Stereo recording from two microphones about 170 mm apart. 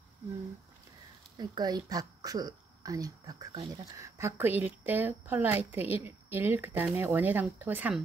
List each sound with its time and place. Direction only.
1.3 s a woman's voice: 25° right (ahead or behind)